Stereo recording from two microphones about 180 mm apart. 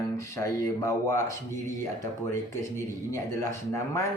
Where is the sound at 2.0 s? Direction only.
15° left (ahead or behind).